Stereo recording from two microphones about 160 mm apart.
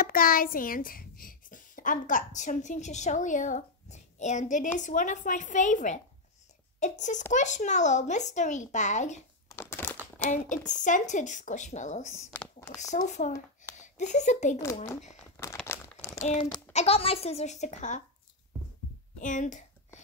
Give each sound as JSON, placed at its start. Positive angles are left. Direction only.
{"t": 0.0, "sound": "a child's voice", "side_deg": 65}
{"t": 9.5, "sound": "a sound", "side_deg": 15}
{"t": 10.1, "sound": "a child's voice", "side_deg": 50}
{"t": 12.3, "sound": "a sound", "side_deg": 10}
{"t": 12.9, "sound": "a child's voice", "side_deg": 50}
{"t": 15.6, "sound": "crumpling", "side_deg": 15}
{"t": 16.2, "sound": "a sound", "side_deg": 50}
{"t": 16.7, "sound": "a child's voice", "side_deg": 40}
{"t": 19.1, "sound": "speech", "side_deg": 50}